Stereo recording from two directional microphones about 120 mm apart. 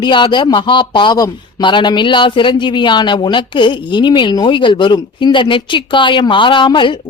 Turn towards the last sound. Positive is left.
turn(degrees=40)  # may be behind; listen again after turning